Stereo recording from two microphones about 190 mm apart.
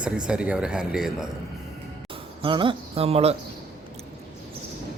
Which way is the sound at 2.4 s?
25° right (ahead or behind).